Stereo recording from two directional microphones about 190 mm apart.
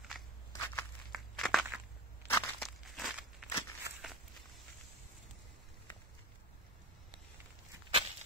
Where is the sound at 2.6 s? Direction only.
Centre (ahead or behind).